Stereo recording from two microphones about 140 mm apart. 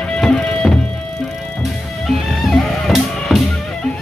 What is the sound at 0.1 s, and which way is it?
Music, 5° left (ahead or behind).